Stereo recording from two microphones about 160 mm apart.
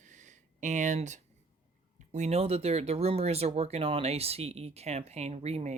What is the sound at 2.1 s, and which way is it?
Speech, 40° right (ahead or behind).